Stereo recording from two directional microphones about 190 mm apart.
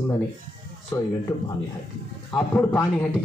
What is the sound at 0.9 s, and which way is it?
Speech, 20° left (ahead or behind).